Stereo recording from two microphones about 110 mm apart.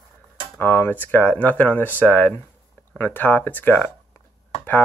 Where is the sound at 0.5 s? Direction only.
20° left (ahead or behind).